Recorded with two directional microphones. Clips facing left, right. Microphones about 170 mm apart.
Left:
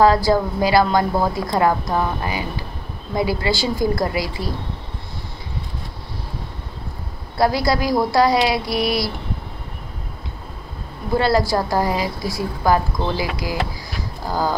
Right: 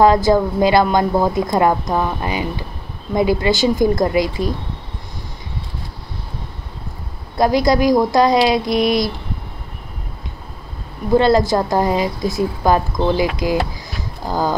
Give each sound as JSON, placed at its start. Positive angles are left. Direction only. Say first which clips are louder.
{"t": 0.0, "sound": "a woman's voice", "louder": "right 3 dB", "side_deg": -20}
{"t": 7.3, "sound": "a woman's voice", "louder": "right 4 dB", "side_deg": -20}
{"t": 11.1, "sound": "a woman's voice", "louder": "right 4 dB", "side_deg": -20}